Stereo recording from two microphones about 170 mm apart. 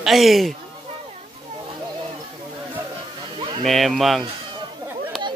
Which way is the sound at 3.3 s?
30° right (ahead or behind).